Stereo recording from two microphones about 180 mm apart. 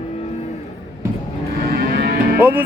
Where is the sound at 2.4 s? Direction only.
10° right (ahead or behind).